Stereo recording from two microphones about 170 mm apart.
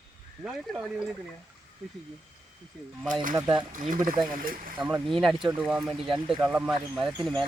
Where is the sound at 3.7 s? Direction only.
50° right (ahead or behind).